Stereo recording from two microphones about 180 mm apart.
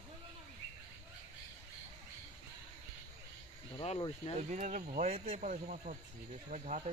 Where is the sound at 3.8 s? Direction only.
30° left (ahead or behind).